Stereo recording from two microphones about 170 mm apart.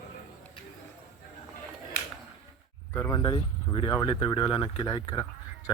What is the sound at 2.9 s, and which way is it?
Speech, 20° left (ahead or behind).